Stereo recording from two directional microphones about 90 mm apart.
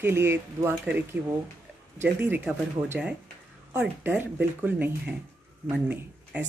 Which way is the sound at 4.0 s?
20° right (ahead or behind).